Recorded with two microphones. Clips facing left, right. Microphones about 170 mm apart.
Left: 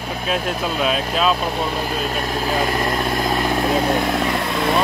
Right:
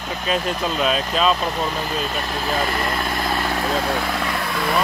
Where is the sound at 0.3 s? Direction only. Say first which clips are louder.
Even; 5° left (ahead or behind).